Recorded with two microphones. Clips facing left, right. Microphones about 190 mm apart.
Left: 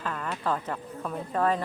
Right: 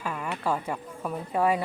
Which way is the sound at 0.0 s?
10° right (ahead or behind).